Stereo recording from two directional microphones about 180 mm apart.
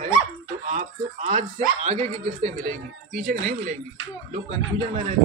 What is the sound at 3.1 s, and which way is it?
Speech, 50° right (ahead or behind).